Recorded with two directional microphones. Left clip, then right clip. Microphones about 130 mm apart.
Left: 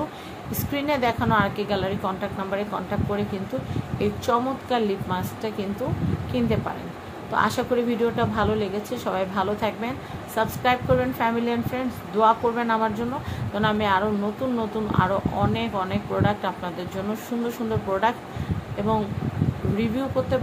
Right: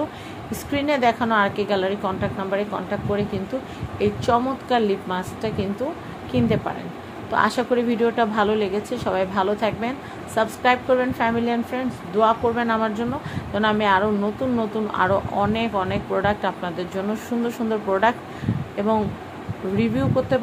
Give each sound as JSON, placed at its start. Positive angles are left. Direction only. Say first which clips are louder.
{"t": 0.5, "sound": "a woman's voice", "louder": "right 3 dB", "side_deg": -15}